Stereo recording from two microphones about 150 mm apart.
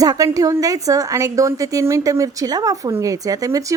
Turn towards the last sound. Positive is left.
turn(degrees=-20)  # may be behind; listen again after turning